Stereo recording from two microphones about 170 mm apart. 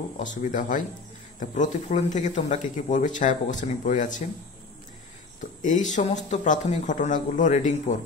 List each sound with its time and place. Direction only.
0.2 s speech: 50° left (ahead or behind)
5.4 s speech: 50° left (ahead or behind)